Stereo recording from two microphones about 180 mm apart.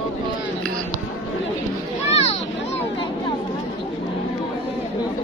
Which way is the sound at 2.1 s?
35° left (ahead or behind).